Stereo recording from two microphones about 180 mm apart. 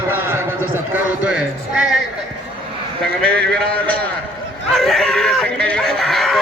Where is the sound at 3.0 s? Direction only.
5° left (ahead or behind).